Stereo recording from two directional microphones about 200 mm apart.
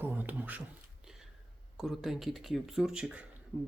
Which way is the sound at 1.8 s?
Centre (ahead or behind).